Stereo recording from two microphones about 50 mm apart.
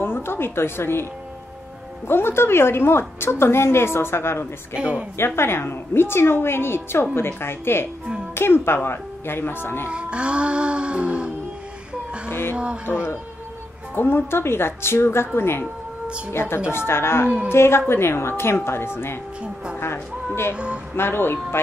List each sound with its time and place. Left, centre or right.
0.0 s a woman's voice: left
2.0 s a woman's voice: left
4.7 s speech: right
5.1 s a woman's voice: left
9.8 s music: right
12.3 s a woman's voice: left
13.9 s a woman's voice: left
19.4 s speech: right
19.8 s speech: left
20.5 s speech: right
20.9 s a woman's voice: left